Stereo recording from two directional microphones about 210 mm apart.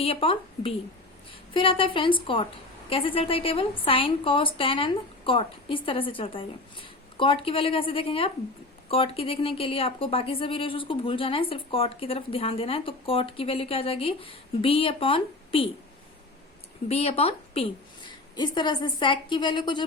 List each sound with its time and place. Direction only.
0.0 s a woman's voice: 25° left (ahead or behind)
16.9 s a woman's voice: 30° left (ahead or behind)